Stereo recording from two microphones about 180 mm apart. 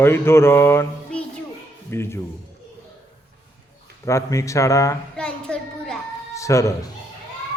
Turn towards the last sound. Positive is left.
turn(degrees=15)  # may be behind; listen again after turning